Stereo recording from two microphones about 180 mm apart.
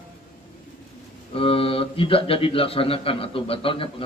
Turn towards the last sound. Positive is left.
turn(degrees=30)  # may be behind; listen again after turning